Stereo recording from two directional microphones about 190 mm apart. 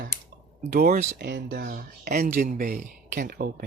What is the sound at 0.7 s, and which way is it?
Speech, 50° right (ahead or behind).